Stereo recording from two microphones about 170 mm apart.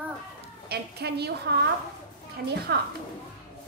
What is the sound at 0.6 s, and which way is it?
A woman's voice, 70° right (ahead or behind).